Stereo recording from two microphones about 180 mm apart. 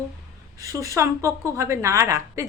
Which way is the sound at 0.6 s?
15° right (ahead or behind).